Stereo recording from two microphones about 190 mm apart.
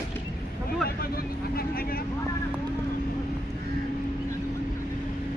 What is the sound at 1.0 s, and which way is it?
Vehicle, 50° left (ahead or behind).